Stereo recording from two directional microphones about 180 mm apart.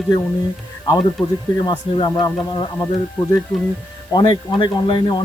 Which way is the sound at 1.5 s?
25° left (ahead or behind).